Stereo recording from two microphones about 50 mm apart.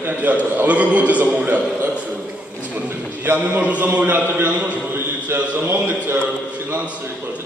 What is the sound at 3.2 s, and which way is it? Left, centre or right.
A man's voice, right.